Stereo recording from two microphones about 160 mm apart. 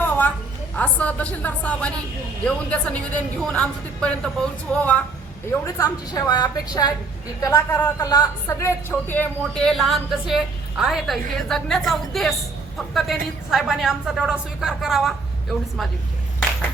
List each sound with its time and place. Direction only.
0.0 s a sound: 10° left (ahead or behind)
0.8 s a woman's voice: 10° left (ahead or behind)
5.5 s a woman's voice: 20° left (ahead or behind); by 15.1 s centre (ahead or behind)